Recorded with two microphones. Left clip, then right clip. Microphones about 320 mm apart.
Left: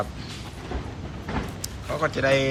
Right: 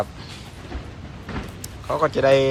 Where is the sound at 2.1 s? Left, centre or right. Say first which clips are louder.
Right 5 dB; centre.